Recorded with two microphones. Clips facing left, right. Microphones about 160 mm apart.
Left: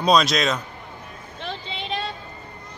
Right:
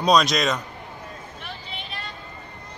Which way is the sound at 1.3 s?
90° left.